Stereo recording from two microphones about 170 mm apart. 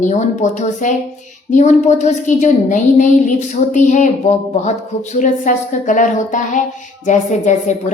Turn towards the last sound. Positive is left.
turn(degrees=45)  # may be behind; listen again after turning